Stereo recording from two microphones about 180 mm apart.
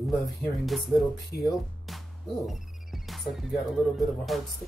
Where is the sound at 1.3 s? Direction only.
60° left (ahead or behind).